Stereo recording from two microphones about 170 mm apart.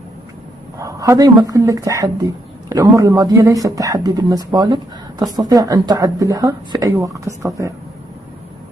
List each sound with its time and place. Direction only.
0.7 s speech: 20° right (ahead or behind)